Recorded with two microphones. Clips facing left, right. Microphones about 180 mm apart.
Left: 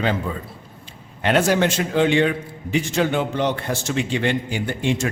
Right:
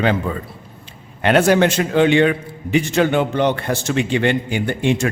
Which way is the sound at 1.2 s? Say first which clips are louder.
Right 4 dB; 60° right (ahead or behind).